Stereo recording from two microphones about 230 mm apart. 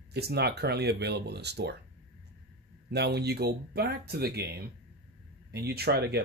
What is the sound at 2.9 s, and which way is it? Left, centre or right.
Speech, right.